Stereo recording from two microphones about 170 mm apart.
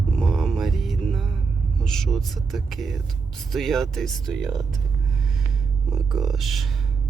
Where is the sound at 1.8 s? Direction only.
5° left (ahead or behind).